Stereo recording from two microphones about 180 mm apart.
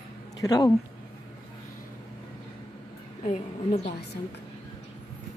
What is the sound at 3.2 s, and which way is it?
Speech, 40° left (ahead or behind).